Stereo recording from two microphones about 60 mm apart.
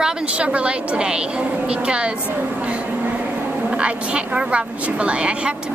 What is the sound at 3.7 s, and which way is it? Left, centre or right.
A woman's voice, centre.